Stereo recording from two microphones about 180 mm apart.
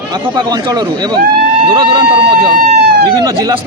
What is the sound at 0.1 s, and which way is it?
A man's voice, 20° right (ahead or behind).